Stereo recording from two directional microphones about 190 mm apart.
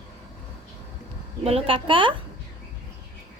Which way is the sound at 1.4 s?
30° right (ahead or behind).